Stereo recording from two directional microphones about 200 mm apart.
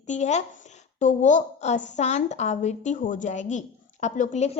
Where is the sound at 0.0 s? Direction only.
35° left (ahead or behind).